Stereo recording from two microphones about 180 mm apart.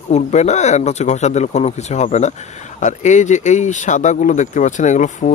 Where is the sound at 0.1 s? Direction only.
40° left (ahead or behind).